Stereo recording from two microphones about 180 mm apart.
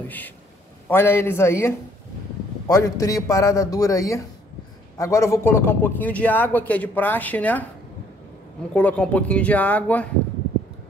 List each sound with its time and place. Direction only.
0.8 s a man's voice: 10° left (ahead or behind)
8.7 s a man's voice: 5° left (ahead or behind)